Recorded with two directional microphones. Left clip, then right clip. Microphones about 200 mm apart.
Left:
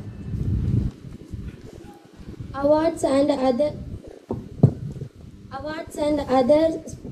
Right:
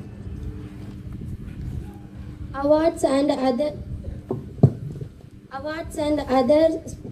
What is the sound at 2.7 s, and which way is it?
A woman's voice, 35° right (ahead or behind).